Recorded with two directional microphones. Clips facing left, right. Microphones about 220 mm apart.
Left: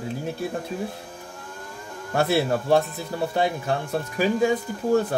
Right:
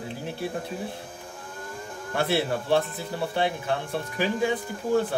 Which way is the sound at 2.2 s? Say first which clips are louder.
Left 4 dB; 45° left (ahead or behind).